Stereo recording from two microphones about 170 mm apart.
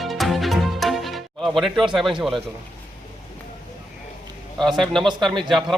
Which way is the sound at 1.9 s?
Centre (ahead or behind).